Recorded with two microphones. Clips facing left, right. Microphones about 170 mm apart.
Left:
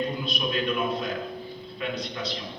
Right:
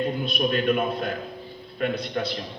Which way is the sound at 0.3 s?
55° right (ahead or behind).